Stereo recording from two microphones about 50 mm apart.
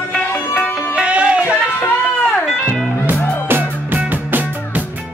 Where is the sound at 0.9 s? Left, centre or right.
Right.